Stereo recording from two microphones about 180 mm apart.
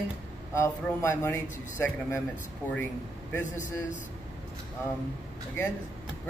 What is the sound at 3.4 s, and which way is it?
Speech, 45° left (ahead or behind).